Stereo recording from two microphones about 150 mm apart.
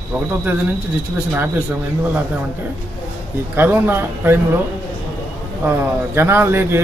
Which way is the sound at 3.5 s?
15° right (ahead or behind).